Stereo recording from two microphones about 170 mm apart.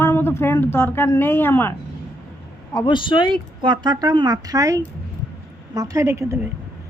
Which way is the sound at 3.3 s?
25° right (ahead or behind).